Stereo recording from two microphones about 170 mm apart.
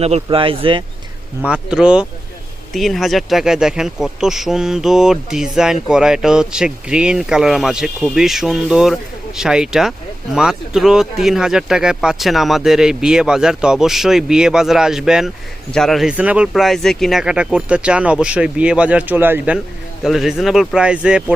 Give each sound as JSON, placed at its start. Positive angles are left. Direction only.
{"t": 0.0, "sound": "speech", "side_deg": -35}
{"t": 1.5, "sound": "speech", "side_deg": -5}